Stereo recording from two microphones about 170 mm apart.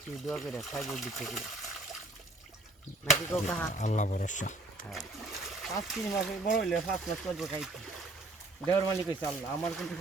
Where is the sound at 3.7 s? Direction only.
45° left (ahead or behind).